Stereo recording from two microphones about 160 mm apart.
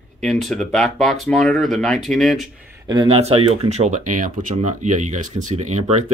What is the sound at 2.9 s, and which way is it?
Speech, 35° right (ahead or behind).